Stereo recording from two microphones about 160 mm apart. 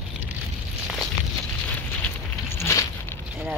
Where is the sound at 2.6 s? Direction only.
20° left (ahead or behind).